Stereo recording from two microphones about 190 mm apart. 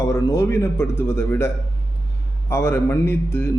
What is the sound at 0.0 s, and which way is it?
A man's voice, 15° left (ahead or behind).